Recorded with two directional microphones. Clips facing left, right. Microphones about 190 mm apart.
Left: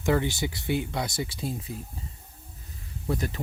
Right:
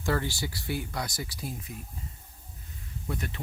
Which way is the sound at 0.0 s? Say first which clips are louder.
Left 5 dB; 20° left (ahead or behind).